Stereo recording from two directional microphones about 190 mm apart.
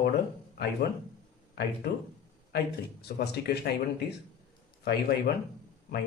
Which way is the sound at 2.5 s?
60° left (ahead or behind).